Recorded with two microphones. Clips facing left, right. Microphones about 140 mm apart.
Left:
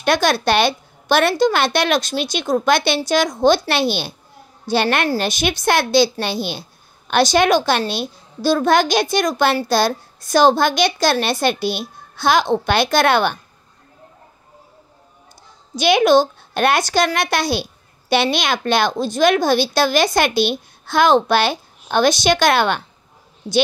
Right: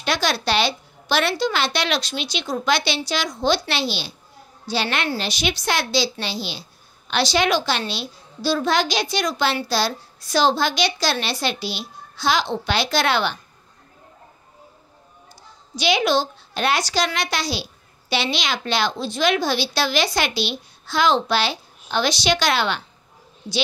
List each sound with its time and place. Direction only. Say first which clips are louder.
0.0 s a woman's voice: left 6 dB; 50° left (ahead or behind)
15.7 s a woman's voice: left 7 dB; 50° left (ahead or behind)